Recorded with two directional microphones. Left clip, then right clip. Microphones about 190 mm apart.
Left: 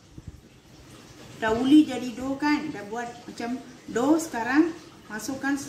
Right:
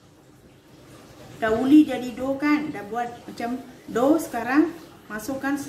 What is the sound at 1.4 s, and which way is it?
A woman's voice, 15° right (ahead or behind).